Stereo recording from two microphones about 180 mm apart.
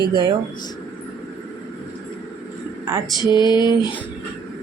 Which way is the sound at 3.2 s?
25° left (ahead or behind).